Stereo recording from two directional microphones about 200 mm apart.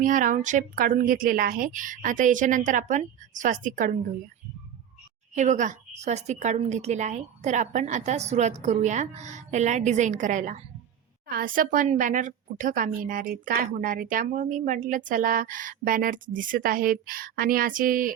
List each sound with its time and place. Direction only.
0.0 s a woman's voice: 40° right (ahead or behind)
5.3 s a woman's voice: 35° right (ahead or behind)